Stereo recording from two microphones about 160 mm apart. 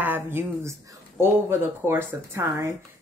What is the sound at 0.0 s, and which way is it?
A woman's voice, 10° right (ahead or behind).